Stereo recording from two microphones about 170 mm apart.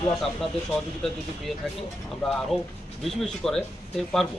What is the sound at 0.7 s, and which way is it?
Speech, centre (ahead or behind).